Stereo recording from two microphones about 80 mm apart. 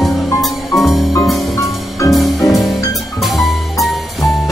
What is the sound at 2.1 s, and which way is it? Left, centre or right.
Music, centre.